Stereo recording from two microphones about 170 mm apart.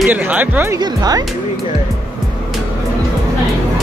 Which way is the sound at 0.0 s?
10° right (ahead or behind).